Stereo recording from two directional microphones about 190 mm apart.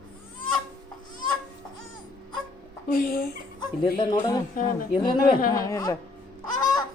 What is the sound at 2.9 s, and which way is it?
Speech, 50° left (ahead or behind).